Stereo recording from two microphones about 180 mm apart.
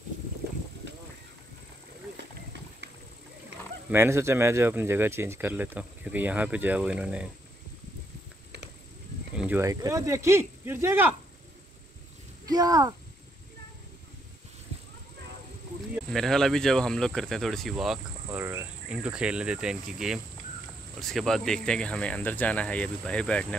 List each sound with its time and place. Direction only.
0.4 s boat: 60° right (ahead or behind)
0.8 s a sound: 80° right
3.9 s speech: 15° right (ahead or behind)
9.4 s speech: 15° right (ahead or behind)
12.4 s speech: 20° right (ahead or behind)
16.1 s speech: centre (ahead or behind)
18.4 s speech: 15° right (ahead or behind); by 23.4 s 5° left (ahead or behind)